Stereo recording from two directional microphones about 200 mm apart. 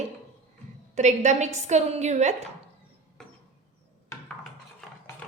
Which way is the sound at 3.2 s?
5° left (ahead or behind).